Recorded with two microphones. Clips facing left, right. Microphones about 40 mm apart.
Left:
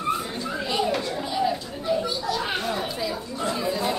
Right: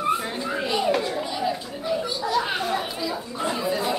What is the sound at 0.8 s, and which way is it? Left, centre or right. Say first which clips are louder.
Chatter: right 3 dB; centre.